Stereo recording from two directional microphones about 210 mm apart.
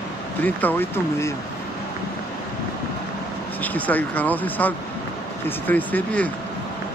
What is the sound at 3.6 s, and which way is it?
Speech, 10° left (ahead or behind).